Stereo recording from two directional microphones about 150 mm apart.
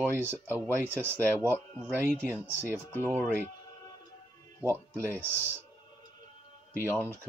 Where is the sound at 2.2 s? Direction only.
15° left (ahead or behind).